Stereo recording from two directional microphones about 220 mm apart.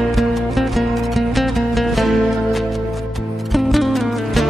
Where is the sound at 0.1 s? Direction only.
Centre (ahead or behind).